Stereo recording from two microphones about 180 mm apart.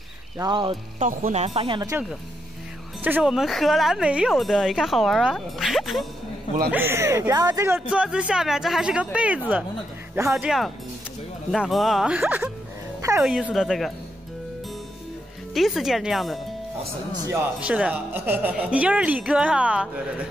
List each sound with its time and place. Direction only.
0.4 s speech: 25° right (ahead or behind)
0.9 s speech: 40° right (ahead or behind)
1.8 s a woman's voice: 15° right (ahead or behind); by 6.0 s centre (ahead or behind)
6.7 s a woman's voice: 10° right (ahead or behind)
7.9 s speech: 5° right (ahead or behind)
15.5 s a woman's voice: centre (ahead or behind)